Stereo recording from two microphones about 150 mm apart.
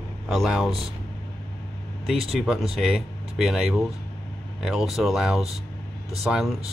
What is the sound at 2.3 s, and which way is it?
Speech, 5° right (ahead or behind).